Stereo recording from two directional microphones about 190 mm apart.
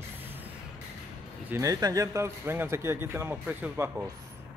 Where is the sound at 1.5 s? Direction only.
15° right (ahead or behind).